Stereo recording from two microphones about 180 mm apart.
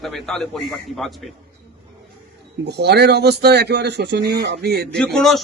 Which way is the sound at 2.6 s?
70° right (ahead or behind).